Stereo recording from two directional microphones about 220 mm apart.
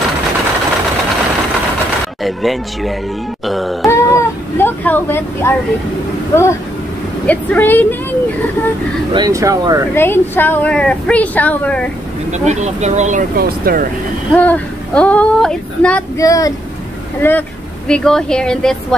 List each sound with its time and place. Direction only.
2.2 s speech: centre (ahead or behind)
3.4 s wail: centre (ahead or behind)
3.8 s vehicle: 10° left (ahead or behind)
6.3 s a woman's voice: 10° left (ahead or behind)
9.1 s speech: 15° right (ahead or behind)
9.9 s a woman's voice: 10° left (ahead or behind)
12.3 s speech: 30° right (ahead or behind)
14.3 s a woman's voice: 5° left (ahead or behind)